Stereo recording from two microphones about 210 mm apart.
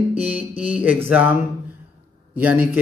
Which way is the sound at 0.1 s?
5° right (ahead or behind).